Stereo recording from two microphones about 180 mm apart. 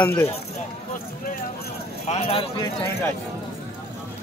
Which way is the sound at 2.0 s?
35° left (ahead or behind).